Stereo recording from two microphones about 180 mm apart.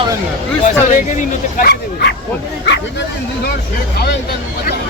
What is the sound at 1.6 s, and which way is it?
Speech, 65° left (ahead or behind).